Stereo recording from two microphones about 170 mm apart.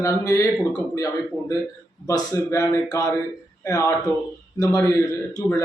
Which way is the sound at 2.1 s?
20° left (ahead or behind).